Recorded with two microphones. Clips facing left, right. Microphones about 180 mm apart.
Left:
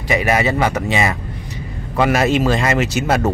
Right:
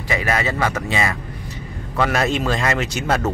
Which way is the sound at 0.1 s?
15° left (ahead or behind).